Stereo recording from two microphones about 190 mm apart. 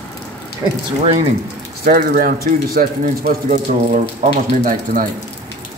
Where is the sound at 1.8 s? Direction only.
50° right (ahead or behind).